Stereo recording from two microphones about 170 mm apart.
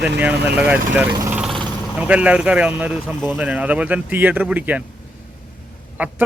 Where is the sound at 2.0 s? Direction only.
5° right (ahead or behind).